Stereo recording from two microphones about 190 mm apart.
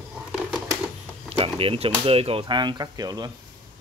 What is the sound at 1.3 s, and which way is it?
Speech, 30° right (ahead or behind).